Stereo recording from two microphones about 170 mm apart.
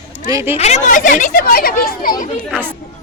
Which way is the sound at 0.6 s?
45° left (ahead or behind).